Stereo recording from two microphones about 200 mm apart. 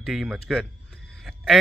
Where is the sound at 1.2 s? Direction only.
Centre (ahead or behind).